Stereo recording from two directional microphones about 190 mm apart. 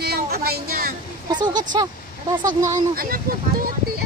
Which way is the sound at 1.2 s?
20° right (ahead or behind).